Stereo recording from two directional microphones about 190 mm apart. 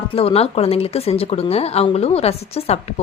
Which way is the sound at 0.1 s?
30° left (ahead or behind).